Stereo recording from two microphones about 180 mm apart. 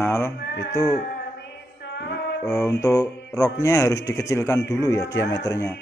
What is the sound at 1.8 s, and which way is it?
Music, 70° left (ahead or behind).